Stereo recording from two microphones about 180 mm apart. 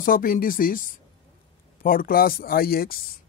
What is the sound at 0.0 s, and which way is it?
Speech, 50° left (ahead or behind).